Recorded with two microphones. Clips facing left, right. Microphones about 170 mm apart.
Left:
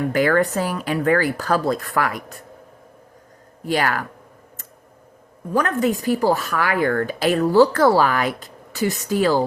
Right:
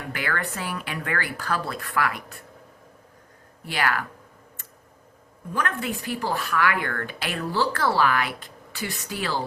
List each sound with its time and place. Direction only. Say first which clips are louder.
0.1 s speech: left 10 dB; 45° left (ahead or behind)
3.7 s speech: left 5 dB; 45° left (ahead or behind)
5.5 s speech: left 9 dB; 40° left (ahead or behind)